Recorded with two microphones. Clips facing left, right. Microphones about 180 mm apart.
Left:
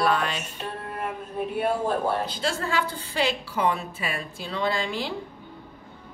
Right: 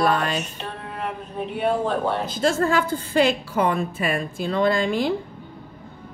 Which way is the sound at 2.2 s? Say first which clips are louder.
Right 7 dB; 45° right (ahead or behind).